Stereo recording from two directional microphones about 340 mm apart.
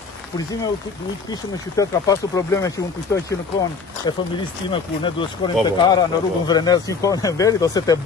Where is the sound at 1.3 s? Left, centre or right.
Centre.